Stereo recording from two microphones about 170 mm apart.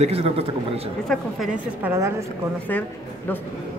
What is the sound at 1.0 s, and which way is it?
Speech, 5° left (ahead or behind).